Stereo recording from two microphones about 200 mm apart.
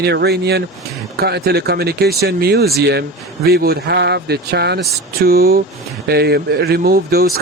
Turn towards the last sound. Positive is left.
turn(degrees=-50)  # may be behind; listen again after turning